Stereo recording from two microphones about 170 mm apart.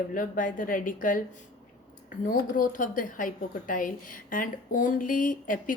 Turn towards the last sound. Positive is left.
turn(degrees=50)  # may be behind; listen again after turning